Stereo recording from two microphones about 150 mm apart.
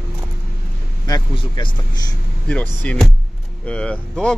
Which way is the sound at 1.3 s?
30° left (ahead or behind).